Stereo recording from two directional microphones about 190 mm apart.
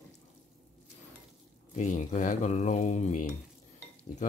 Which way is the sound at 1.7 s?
40° left (ahead or behind).